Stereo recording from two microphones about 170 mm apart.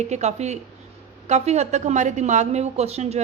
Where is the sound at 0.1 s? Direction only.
40° right (ahead or behind).